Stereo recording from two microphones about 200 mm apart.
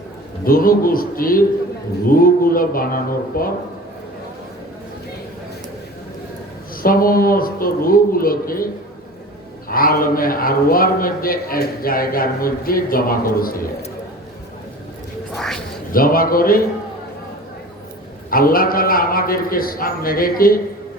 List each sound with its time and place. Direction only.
0.4 s a man's voice: 45° left (ahead or behind)
6.8 s a man's voice: 45° left (ahead or behind)
15.4 s a sound: centre (ahead or behind)
15.9 s a man's voice: 45° left (ahead or behind)
18.3 s a man's voice: 45° left (ahead or behind)